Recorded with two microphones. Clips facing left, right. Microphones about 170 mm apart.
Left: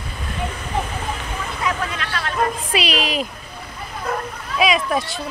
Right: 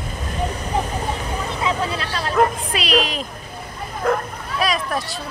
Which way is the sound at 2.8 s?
5° left (ahead or behind).